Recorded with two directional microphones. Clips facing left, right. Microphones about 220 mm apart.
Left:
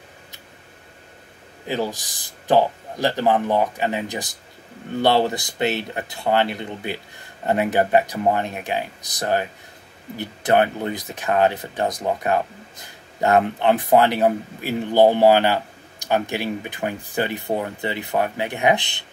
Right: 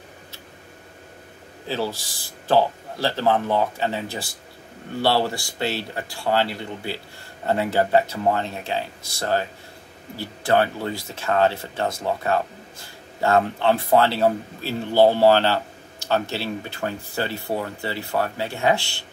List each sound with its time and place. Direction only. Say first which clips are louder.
1.7 s speech: left 2 dB; 15° left (ahead or behind)